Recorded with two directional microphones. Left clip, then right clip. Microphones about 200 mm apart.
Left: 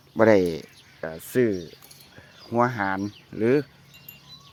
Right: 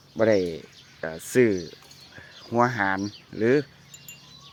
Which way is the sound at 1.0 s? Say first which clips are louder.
Right 2 dB; 5° left (ahead or behind).